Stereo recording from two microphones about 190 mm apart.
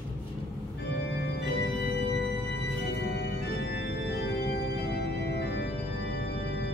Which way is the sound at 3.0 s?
65° left (ahead or behind).